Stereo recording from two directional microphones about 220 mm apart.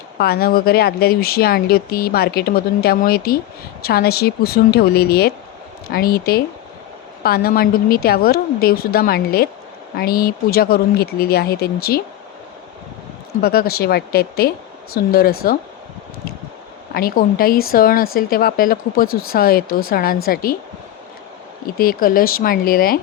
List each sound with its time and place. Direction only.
0.2 s speech: 45° left (ahead or behind)
13.4 s speech: 45° left (ahead or behind)
16.9 s a woman's voice: 40° left (ahead or behind)
21.8 s a woman's voice: 40° left (ahead or behind)